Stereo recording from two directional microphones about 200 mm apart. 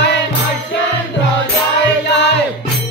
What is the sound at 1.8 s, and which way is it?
Music, 60° left (ahead or behind).